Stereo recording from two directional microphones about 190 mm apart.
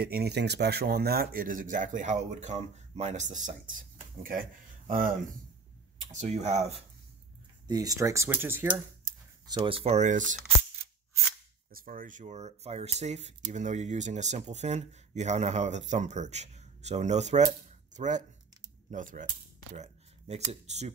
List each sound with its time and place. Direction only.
0.0 s speech: 55° right (ahead or behind)
6.1 s speech: 35° right (ahead or behind)
7.6 s speech: 20° right (ahead or behind)
9.5 s speech: 30° right (ahead or behind)
11.7 s speech: 50° right (ahead or behind)